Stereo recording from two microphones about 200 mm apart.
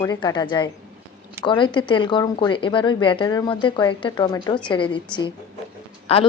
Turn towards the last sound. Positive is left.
turn(degrees=30)  # may be behind; listen again after turning